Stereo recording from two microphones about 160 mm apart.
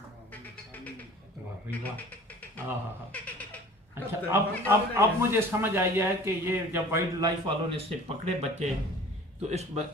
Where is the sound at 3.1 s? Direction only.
10° left (ahead or behind).